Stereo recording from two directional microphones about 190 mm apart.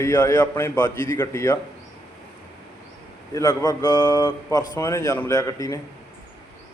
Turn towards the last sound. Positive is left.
turn(degrees=15)  # may be behind; listen again after turning